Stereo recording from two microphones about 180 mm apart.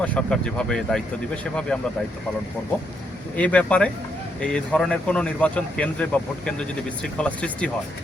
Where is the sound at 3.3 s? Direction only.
5° left (ahead or behind).